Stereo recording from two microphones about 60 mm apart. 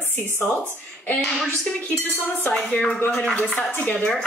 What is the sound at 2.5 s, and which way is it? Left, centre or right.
A woman's voice, centre.